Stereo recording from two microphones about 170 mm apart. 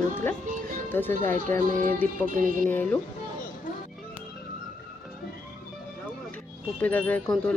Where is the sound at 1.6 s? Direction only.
55° right (ahead or behind).